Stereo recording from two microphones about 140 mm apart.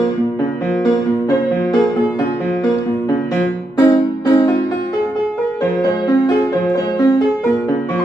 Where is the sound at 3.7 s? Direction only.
25° left (ahead or behind).